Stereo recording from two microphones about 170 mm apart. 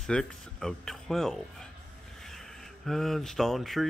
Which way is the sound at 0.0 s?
5° left (ahead or behind).